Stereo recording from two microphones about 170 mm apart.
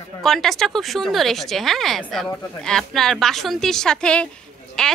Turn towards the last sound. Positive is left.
turn(degrees=5)  # may be behind; listen again after turning